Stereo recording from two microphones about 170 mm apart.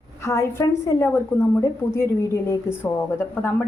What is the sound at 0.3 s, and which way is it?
A woman's voice, 15° left (ahead or behind).